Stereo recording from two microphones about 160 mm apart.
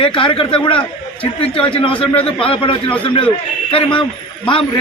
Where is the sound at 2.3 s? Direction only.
35° left (ahead or behind).